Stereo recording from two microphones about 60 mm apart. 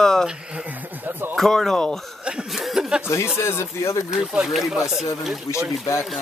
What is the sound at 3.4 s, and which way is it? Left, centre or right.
Speech, left.